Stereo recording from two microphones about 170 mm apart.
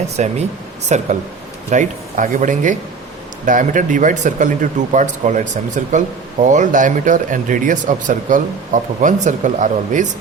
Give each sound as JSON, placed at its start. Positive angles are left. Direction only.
{"t": 0.2, "sound": "speech", "side_deg": -45}